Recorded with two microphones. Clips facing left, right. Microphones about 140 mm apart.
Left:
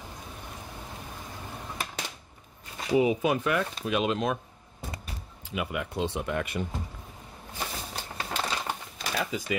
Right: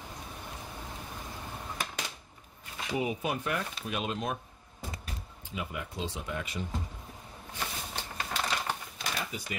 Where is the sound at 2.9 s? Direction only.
90° left.